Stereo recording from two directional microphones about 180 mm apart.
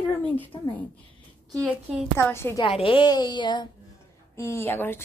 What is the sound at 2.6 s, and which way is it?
A woman's voice, 30° left (ahead or behind).